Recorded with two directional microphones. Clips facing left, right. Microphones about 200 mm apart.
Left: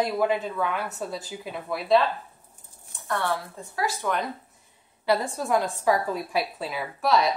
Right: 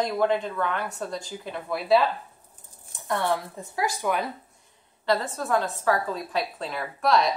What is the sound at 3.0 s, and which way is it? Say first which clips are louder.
Speech: right 2 dB; 15° right (ahead or behind).